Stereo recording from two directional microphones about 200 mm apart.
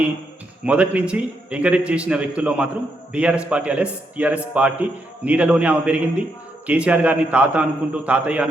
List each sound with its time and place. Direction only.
0.6 s a man's voice: 5° right (ahead or behind)